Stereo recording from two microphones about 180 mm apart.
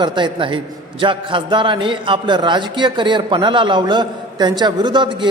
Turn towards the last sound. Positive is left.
turn(degrees=-25)  # may be behind; listen again after turning